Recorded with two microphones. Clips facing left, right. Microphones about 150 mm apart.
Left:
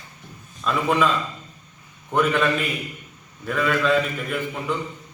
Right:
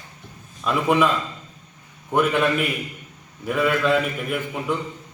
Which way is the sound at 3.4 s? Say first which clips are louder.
Right 1 dB; 10° right (ahead or behind).